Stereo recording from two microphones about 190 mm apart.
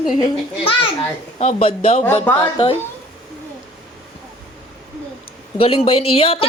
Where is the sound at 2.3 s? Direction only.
10° left (ahead or behind).